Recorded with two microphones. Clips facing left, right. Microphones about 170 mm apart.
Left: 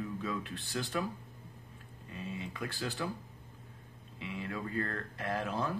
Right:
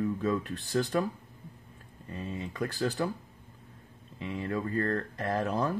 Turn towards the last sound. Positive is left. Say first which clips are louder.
# right 5 dB
turn(degrees=-40)  # may be behind; listen again after turning